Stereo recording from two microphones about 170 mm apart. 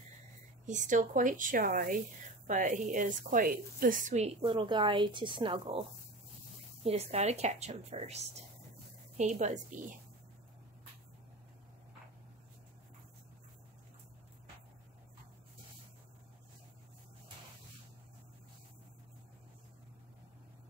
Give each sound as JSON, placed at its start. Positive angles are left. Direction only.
{"t": 0.7, "sound": "a woman's voice", "side_deg": -50}